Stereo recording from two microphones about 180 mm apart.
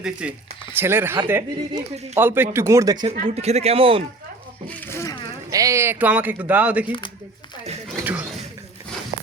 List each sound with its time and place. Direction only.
0.0 s speech: 5° right (ahead or behind)
3.1 s speech: 35° right (ahead or behind)
4.7 s insect: 15° left (ahead or behind)
5.5 s speech: 20° right (ahead or behind)